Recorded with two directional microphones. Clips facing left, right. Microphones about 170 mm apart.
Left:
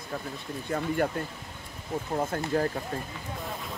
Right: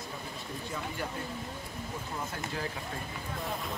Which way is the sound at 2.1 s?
50° left (ahead or behind).